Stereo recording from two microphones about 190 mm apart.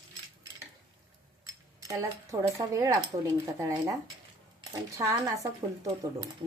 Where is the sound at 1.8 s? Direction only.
15° right (ahead or behind).